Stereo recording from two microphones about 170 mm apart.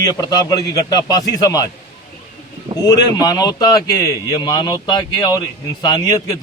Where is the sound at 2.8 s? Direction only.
20° left (ahead or behind).